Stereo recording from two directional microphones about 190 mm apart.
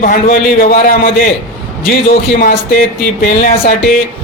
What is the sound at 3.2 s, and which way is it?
Speech, 45° left (ahead or behind).